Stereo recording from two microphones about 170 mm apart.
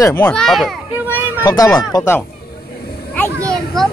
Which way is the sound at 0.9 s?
10° right (ahead or behind).